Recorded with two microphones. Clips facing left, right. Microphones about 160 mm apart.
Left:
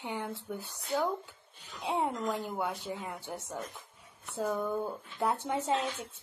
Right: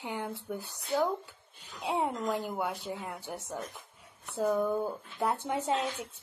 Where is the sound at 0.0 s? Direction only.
Centre (ahead or behind).